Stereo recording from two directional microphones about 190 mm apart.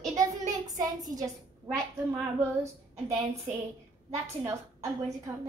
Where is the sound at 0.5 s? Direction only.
20° right (ahead or behind).